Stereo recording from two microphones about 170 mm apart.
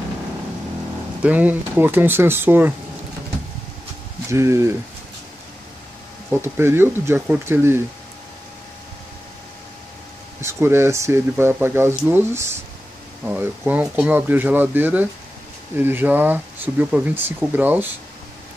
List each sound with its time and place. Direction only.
1.2 s speech: 10° right (ahead or behind)
4.3 s speech: 15° right (ahead or behind)
6.4 s speech: 15° right (ahead or behind)
10.4 s speech: 15° right (ahead or behind)